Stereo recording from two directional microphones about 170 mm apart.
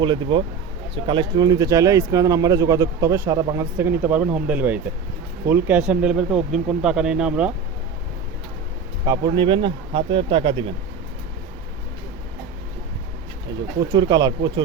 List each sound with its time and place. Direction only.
0.0 s speech: 30° right (ahead or behind); by 7.5 s 5° right (ahead or behind)
9.0 s speech: 25° right (ahead or behind)
13.7 s speech: 25° right (ahead or behind)